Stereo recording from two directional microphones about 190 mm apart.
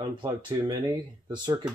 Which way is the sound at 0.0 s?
25° right (ahead or behind).